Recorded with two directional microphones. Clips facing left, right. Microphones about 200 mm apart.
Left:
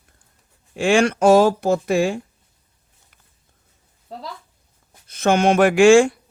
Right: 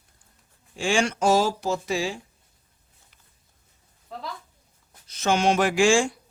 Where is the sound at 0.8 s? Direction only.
60° left (ahead or behind).